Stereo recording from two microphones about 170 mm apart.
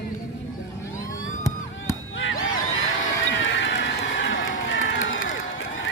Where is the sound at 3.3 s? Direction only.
90° left.